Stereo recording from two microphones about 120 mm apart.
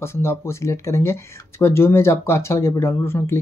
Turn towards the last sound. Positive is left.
turn(degrees=20)  # may be behind; listen again after turning